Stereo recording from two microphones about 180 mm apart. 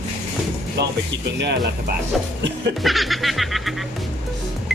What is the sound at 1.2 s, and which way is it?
Speech, 70° right (ahead or behind).